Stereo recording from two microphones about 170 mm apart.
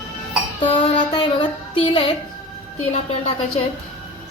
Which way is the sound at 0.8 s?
30° left (ahead or behind).